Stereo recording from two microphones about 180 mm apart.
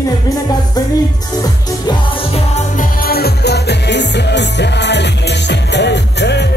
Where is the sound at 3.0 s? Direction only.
60° left (ahead or behind).